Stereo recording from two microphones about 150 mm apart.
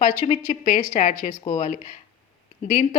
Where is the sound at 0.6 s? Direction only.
65° left (ahead or behind).